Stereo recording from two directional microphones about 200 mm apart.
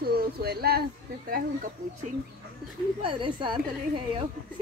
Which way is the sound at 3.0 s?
25° right (ahead or behind).